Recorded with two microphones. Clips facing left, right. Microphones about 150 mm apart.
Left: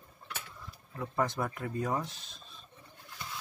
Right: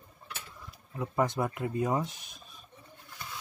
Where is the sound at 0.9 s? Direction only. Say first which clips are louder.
Right 3 dB; 15° right (ahead or behind).